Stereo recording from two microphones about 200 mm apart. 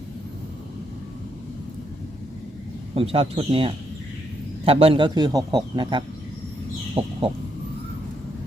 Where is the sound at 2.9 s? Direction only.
30° right (ahead or behind).